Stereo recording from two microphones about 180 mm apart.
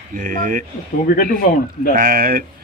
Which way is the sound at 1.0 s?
55° left (ahead or behind).